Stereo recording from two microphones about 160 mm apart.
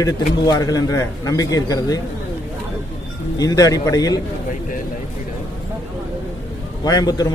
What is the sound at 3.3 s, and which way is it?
Speech, 25° left (ahead or behind).